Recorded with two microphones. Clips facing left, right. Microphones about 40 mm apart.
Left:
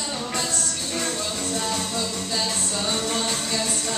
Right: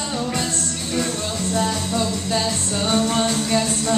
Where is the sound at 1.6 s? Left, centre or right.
Centre.